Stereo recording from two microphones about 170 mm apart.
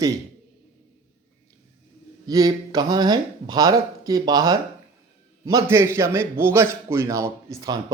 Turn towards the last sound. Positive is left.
turn(degrees=-20)  # may be behind; listen again after turning